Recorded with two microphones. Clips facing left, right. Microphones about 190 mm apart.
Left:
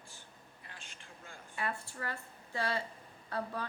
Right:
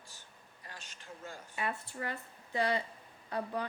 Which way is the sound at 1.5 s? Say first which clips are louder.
Right 1 dB; 20° right (ahead or behind).